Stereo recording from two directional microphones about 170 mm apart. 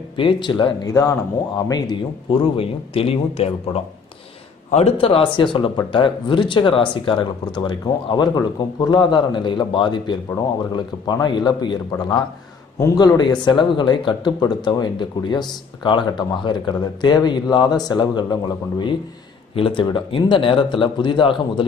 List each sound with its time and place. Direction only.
0.1 s speech: 30° left (ahead or behind)
2.5 s speech: 35° left (ahead or behind)